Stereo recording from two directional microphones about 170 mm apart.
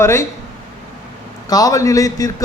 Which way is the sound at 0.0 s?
15° left (ahead or behind).